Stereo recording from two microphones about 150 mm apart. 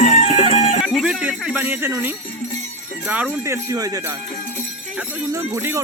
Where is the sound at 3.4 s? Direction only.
20° right (ahead or behind).